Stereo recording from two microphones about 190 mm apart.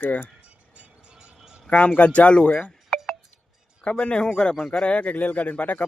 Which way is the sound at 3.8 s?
5° left (ahead or behind).